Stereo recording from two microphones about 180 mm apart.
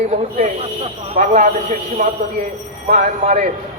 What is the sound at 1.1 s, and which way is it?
A man's voice, 40° right (ahead or behind).